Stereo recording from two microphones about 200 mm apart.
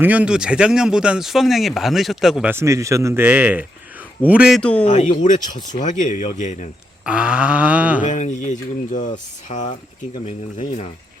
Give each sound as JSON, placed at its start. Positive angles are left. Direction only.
{"t": 0.0, "sound": "speech", "side_deg": -5}
{"t": 4.9, "sound": "speech", "side_deg": 35}
{"t": 7.0, "sound": "speech", "side_deg": -5}
{"t": 8.0, "sound": "speech", "side_deg": 40}